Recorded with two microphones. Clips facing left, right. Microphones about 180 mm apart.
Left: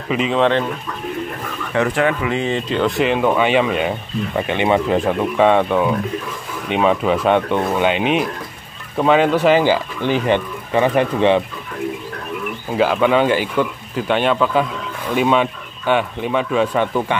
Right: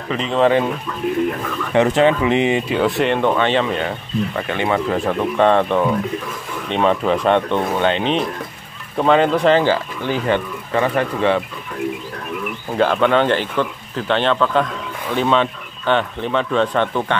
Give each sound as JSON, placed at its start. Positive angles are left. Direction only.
{"t": 0.1, "sound": "speech", "side_deg": 5}
{"t": 1.7, "sound": "speech", "side_deg": -20}
{"t": 5.2, "sound": "speech", "side_deg": 5}
{"t": 12.7, "sound": "speech", "side_deg": 5}